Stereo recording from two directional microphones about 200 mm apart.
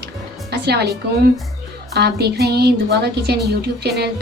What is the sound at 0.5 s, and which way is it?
A woman's voice, 55° right (ahead or behind).